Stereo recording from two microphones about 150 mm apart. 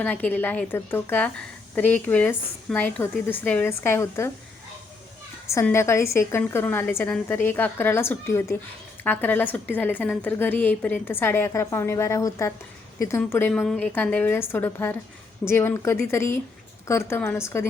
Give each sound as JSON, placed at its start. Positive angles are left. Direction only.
{"t": 0.0, "sound": "a woman's voice", "side_deg": 10}
{"t": 5.6, "sound": "a woman's voice", "side_deg": 15}
{"t": 13.5, "sound": "a woman's voice", "side_deg": 5}